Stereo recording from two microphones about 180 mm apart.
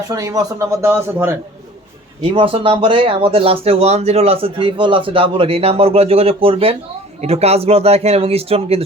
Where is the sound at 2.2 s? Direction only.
30° right (ahead or behind).